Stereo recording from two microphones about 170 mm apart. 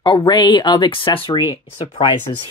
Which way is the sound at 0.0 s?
25° left (ahead or behind).